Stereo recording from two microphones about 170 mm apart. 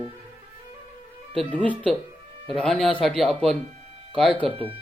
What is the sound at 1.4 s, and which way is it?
Speech, 10° left (ahead or behind).